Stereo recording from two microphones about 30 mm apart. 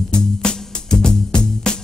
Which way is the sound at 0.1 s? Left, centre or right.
Left.